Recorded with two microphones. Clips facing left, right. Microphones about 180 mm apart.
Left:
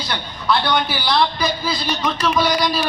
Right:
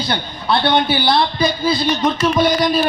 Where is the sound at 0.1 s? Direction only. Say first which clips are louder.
Even; 30° right (ahead or behind).